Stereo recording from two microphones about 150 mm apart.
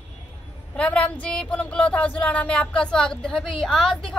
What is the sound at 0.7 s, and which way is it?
A woman's voice, 10° left (ahead or behind).